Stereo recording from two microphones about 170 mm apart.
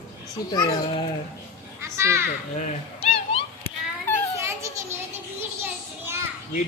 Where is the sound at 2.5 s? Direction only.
40° left (ahead or behind).